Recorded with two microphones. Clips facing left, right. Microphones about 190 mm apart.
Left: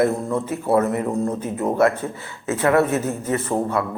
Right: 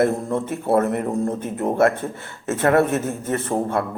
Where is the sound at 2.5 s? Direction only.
50° right (ahead or behind).